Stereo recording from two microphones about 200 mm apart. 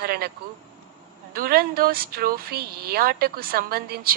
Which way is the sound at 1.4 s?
50° right (ahead or behind).